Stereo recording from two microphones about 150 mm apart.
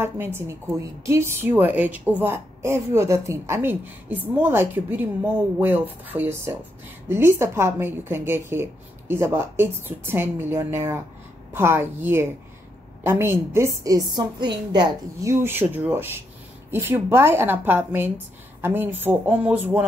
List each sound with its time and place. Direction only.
0.0 s a woman's voice: 15° right (ahead or behind)
15.4 s a woman's voice: 15° right (ahead or behind)